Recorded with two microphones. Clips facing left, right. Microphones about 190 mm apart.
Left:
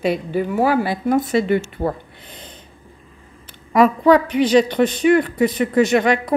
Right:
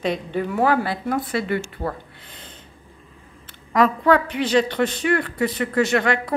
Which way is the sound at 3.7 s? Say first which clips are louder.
Left 4 dB; 10° left (ahead or behind).